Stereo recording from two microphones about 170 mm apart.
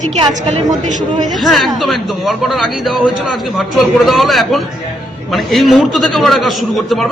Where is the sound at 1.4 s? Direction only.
Centre (ahead or behind).